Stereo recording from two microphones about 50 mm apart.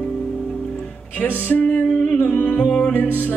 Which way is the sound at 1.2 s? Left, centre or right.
Left.